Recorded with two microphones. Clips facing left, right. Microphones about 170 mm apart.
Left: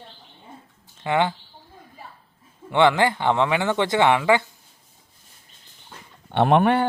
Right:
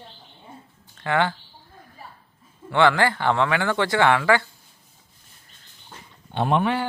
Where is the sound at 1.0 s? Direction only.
20° left (ahead or behind).